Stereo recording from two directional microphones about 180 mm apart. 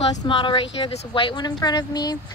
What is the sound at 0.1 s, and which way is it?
Speech, 25° left (ahead or behind).